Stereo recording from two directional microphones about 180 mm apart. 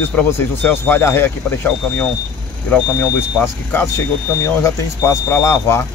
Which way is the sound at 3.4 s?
15° left (ahead or behind).